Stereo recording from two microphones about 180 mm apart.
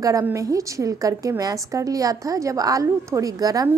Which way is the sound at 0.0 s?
15° right (ahead or behind).